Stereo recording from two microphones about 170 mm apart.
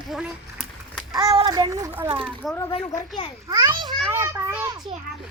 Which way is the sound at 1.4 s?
25° right (ahead or behind).